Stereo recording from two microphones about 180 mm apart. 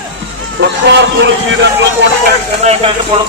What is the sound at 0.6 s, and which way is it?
Speech, 70° right (ahead or behind).